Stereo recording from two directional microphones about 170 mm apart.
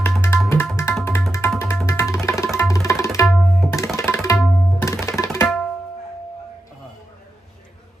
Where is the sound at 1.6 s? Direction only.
10° left (ahead or behind).